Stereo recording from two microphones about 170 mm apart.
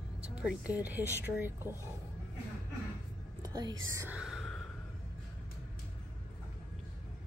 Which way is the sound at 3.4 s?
25° right (ahead or behind).